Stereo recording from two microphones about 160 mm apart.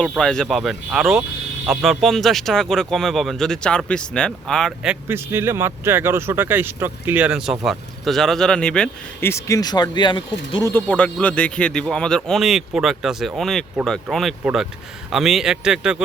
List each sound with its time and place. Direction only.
0.1 s speech: 5° left (ahead or behind)
9.3 s speech: 20° left (ahead or behind)
10.6 s speech: 15° left (ahead or behind); by 16.0 s 5° right (ahead or behind)